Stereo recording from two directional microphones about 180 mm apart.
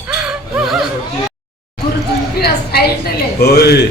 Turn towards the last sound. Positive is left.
turn(degrees=60)  # may be behind; listen again after turning